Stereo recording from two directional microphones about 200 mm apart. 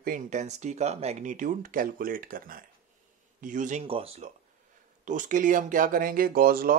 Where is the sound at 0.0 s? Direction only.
40° right (ahead or behind).